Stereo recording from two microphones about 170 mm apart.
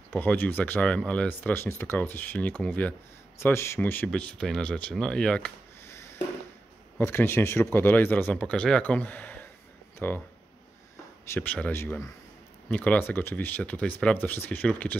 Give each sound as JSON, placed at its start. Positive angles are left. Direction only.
{"t": 0.1, "sound": "speech", "side_deg": 10}
{"t": 5.9, "sound": "a sound", "side_deg": 15}
{"t": 7.0, "sound": "speech", "side_deg": 15}
{"t": 11.3, "sound": "speech", "side_deg": 10}